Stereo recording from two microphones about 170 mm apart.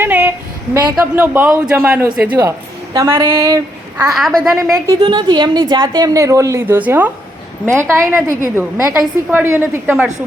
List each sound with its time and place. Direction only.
0.0 s a woman's voice: 10° right (ahead or behind)
4.1 s a woman's voice: centre (ahead or behind)
4.9 s a woman's voice: 25° right (ahead or behind); by 10.1 s 10° right (ahead or behind)